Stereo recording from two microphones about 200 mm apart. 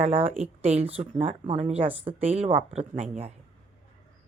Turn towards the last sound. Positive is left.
turn(degrees=-30)  # may be behind; listen again after turning